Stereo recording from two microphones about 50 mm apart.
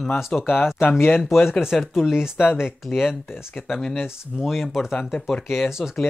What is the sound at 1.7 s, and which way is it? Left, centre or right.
Speech, centre.